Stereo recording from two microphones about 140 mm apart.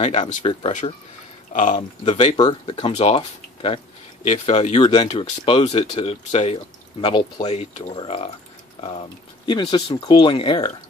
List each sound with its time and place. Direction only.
0.4 s speech: 40° left (ahead or behind)
1.5 s speech: 60° left (ahead or behind)
1.8 s speech: 40° left (ahead or behind)
2.7 s speech: 45° left (ahead or behind)
9.5 s speech: 30° left (ahead or behind)